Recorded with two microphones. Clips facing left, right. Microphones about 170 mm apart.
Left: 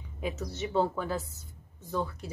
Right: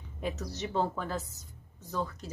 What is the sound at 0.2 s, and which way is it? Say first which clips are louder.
Speech: left 1 dB; centre (ahead or behind).